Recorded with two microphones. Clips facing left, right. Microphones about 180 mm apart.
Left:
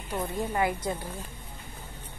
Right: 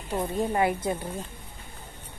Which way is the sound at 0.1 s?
30° right (ahead or behind).